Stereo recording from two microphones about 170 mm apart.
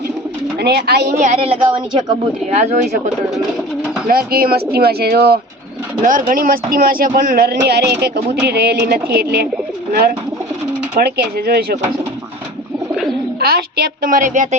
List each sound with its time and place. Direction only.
0.6 s speech: 70° right (ahead or behind)
1.2 s speech: 40° right (ahead or behind)
2.5 s speech: 40° right (ahead or behind)
4.1 s speech: 60° right (ahead or behind)
6.0 s speech: 50° right (ahead or behind)
7.7 s speech: 75° right (ahead or behind)
12.9 s bird: centre (ahead or behind)
13.4 s speech: 65° right (ahead or behind); by 14.5 s 50° right (ahead or behind)